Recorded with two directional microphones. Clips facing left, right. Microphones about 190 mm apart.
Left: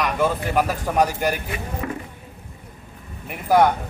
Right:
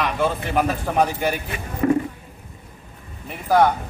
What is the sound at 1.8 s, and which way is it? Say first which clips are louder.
Speech: right 13 dB; 35° right (ahead or behind).